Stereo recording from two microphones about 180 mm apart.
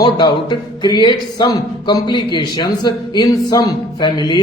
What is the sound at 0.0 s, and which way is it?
Speech, 25° left (ahead or behind).